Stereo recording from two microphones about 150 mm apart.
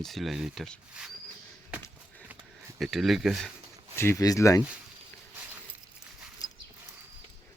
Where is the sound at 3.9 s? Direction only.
20° left (ahead or behind).